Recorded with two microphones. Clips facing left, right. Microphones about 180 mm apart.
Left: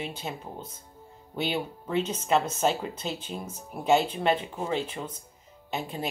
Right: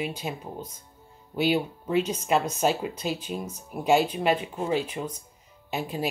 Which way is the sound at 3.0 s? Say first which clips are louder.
Right 4 dB; 10° right (ahead or behind).